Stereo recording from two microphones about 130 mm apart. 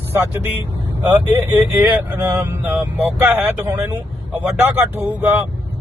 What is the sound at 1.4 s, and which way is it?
Speech, 15° right (ahead or behind).